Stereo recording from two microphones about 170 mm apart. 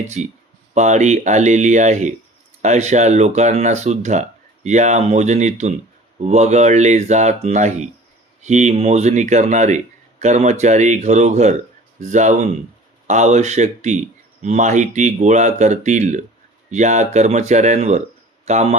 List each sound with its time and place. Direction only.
0.2 s speech: 45° right (ahead or behind)